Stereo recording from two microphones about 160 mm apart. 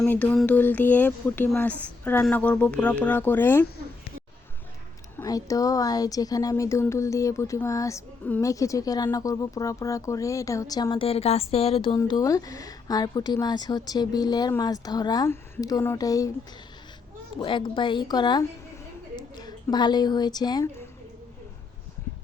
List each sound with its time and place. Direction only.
0.0 s speech: 10° left (ahead or behind)
5.1 s speech: 20° left (ahead or behind)
11.9 s speech: 25° left (ahead or behind)
17.3 s a woman's voice: 30° left (ahead or behind)